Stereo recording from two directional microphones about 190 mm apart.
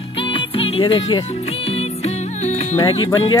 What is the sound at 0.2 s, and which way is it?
Music, 30° left (ahead or behind).